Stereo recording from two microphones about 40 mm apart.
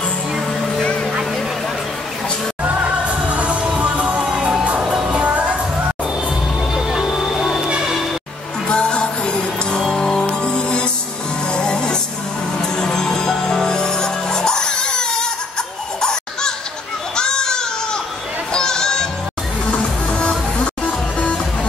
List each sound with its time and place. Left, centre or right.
2.8 s music: right
4.4 s music: right
5.1 s music: right
6.7 s music: centre
7.1 s music: centre
8.6 s music: left
16.0 s children playing: centre
17.1 s baby cry: centre
18.5 s music: centre